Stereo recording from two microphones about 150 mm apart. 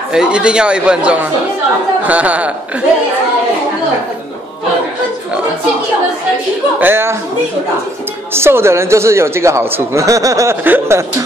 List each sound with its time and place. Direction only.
0.1 s a man's voice: 5° right (ahead or behind)
6.8 s a man's voice: 15° right (ahead or behind)
8.3 s a man's voice: 15° right (ahead or behind)